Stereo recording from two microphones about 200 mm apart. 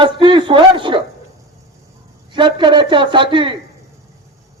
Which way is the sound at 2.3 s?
25° right (ahead or behind).